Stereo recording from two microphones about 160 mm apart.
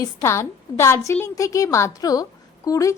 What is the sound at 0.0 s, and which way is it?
A woman's voice, 20° left (ahead or behind).